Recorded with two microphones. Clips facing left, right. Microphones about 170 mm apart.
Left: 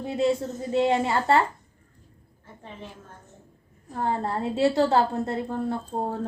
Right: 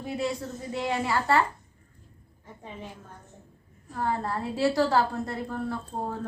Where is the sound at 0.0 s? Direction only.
25° left (ahead or behind).